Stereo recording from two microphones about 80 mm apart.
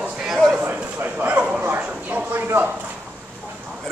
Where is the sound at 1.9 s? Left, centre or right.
Centre.